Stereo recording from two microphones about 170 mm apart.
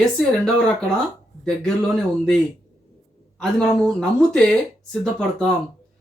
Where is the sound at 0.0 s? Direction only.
Centre (ahead or behind).